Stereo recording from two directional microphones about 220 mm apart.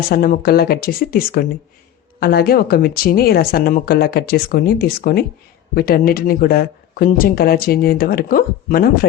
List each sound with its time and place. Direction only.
0.1 s speech: 45° left (ahead or behind)